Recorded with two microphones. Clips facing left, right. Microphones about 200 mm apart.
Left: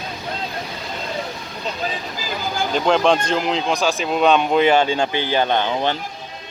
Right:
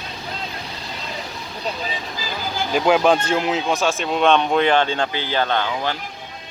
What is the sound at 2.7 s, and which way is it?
Speech, 5° right (ahead or behind).